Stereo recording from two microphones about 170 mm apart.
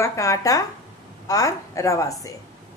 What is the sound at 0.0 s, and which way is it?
A woman's voice, 20° left (ahead or behind).